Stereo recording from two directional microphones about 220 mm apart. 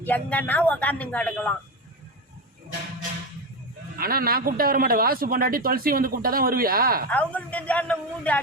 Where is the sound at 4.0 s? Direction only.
40° right (ahead or behind).